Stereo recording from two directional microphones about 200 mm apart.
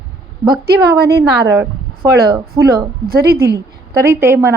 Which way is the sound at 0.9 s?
50° right (ahead or behind).